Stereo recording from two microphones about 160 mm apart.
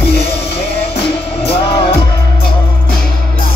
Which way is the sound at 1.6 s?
35° left (ahead or behind).